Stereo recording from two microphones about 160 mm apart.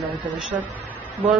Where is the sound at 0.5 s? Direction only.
10° right (ahead or behind).